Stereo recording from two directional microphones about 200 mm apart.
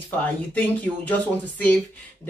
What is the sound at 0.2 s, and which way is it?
Speech, 10° left (ahead or behind).